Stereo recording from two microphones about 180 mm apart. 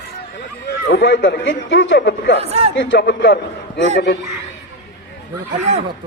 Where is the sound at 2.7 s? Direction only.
70° left (ahead or behind).